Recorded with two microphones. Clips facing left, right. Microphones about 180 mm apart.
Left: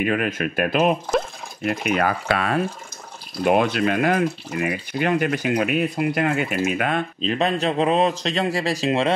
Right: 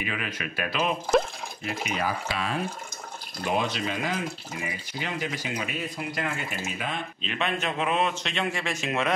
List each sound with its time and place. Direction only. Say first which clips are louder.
0.0 s speech: left 11 dB; 55° left (ahead or behind)
7.2 s speech: left 6 dB; 35° left (ahead or behind)